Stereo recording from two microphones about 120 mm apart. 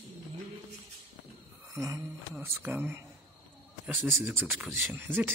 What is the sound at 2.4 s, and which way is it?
Speech, 15° right (ahead or behind).